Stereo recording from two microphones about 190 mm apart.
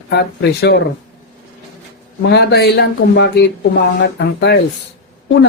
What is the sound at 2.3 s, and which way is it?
Speech, 60° left (ahead or behind).